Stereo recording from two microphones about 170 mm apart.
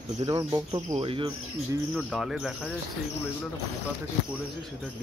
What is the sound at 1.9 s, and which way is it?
Speech, centre (ahead or behind).